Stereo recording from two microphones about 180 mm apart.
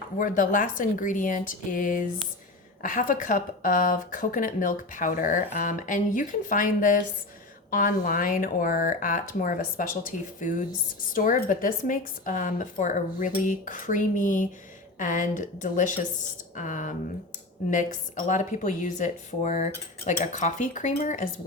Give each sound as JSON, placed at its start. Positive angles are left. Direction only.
{"t": 0.2, "sound": "speech", "side_deg": 50}